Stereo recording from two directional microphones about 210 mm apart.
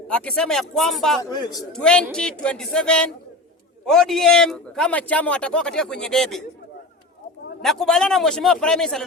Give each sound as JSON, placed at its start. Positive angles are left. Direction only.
{"t": 0.1, "sound": "a man's voice", "side_deg": 5}
{"t": 1.2, "sound": "a man's voice", "side_deg": 20}
{"t": 1.7, "sound": "a man's voice", "side_deg": 5}
{"t": 7.6, "sound": "a man's voice", "side_deg": 0}